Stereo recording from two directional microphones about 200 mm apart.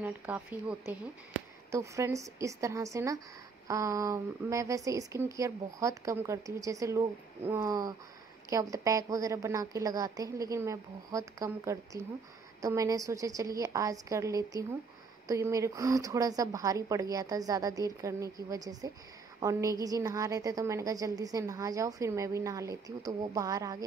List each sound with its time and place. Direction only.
0.0 s a woman's voice: 10° right (ahead or behind)